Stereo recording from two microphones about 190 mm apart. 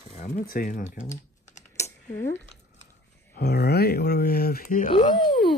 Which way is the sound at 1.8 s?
15° left (ahead or behind).